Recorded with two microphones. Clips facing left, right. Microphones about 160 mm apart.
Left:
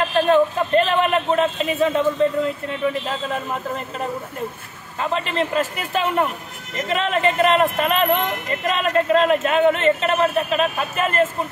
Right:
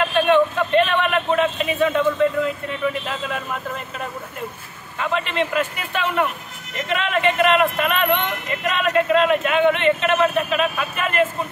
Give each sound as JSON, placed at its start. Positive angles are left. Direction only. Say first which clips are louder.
{"t": 0.1, "sound": "a sound", "louder": "left 2 dB", "side_deg": 35}
{"t": 3.1, "sound": "speech", "louder": "left 2 dB", "side_deg": 35}
{"t": 4.9, "sound": "speech", "louder": "even", "side_deg": 35}